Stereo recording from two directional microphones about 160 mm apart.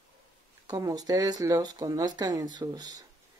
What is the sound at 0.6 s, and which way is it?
Speech, 25° right (ahead or behind).